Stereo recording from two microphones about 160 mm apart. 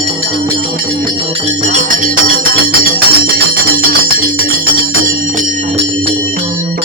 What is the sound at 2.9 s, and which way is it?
Music, 70° right (ahead or behind).